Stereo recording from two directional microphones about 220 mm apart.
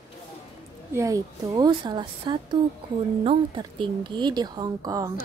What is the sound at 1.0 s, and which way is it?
Speech, 15° right (ahead or behind).